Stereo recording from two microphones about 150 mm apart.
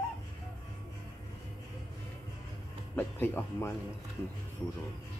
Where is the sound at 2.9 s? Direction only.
15° left (ahead or behind).